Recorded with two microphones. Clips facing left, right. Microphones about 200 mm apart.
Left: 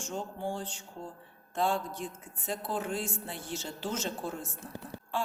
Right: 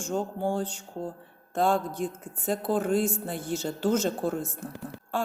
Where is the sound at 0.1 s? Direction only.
45° right (ahead or behind).